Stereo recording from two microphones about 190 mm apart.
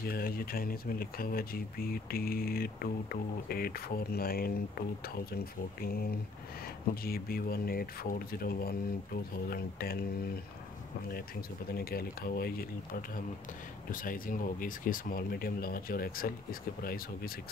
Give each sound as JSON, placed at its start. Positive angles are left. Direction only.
{"t": 0.0, "sound": "speech", "side_deg": 50}
{"t": 11.7, "sound": "speech", "side_deg": 55}